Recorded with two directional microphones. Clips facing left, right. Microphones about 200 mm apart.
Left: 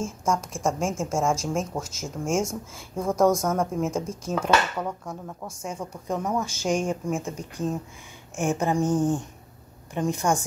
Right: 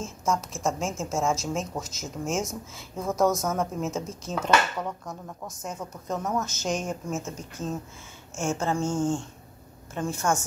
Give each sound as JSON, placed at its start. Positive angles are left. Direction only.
{"t": 0.0, "sound": "speech", "side_deg": 10}